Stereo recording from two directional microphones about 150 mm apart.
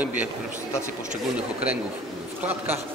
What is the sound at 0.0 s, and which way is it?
Speech, 10° right (ahead or behind).